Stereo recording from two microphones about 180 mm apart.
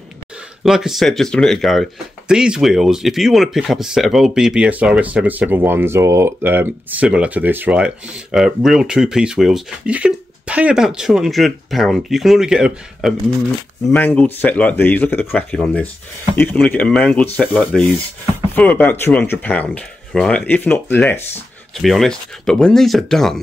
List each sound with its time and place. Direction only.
0.7 s speech: centre (ahead or behind)
13.9 s speech: 10° left (ahead or behind)